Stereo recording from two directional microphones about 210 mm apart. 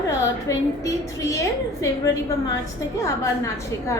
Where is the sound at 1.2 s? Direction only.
15° left (ahead or behind).